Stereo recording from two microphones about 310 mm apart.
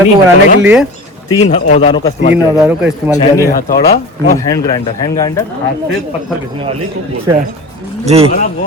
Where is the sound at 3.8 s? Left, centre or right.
Left.